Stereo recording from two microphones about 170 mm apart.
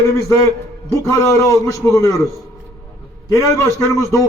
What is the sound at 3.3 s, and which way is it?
Speech, 15° left (ahead or behind).